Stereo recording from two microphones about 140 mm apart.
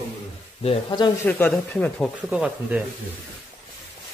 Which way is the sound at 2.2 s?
5° right (ahead or behind).